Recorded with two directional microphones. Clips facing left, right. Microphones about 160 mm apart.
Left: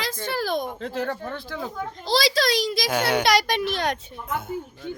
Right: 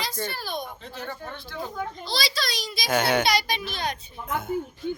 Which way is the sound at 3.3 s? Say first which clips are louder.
Left 5 dB; 80° left.